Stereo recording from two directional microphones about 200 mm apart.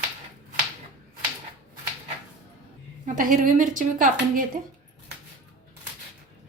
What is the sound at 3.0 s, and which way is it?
Speech, 40° right (ahead or behind).